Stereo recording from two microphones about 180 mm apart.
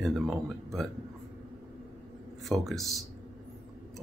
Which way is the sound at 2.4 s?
Centre (ahead or behind).